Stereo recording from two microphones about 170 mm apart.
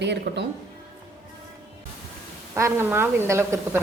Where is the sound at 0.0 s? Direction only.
90° right.